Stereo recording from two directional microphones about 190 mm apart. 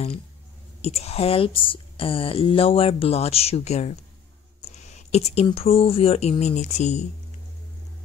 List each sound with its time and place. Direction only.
0.8 s speech: 35° left (ahead or behind)